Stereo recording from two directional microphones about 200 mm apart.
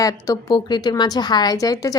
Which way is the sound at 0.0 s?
15° left (ahead or behind).